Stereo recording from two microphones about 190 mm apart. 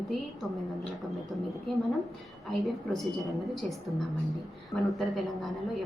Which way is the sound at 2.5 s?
Centre (ahead or behind).